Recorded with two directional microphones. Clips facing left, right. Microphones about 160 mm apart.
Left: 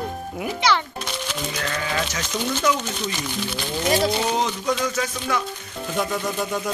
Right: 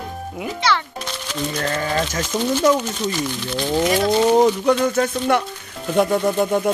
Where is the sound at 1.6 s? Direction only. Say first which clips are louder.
Right 5 dB; 40° right (ahead or behind).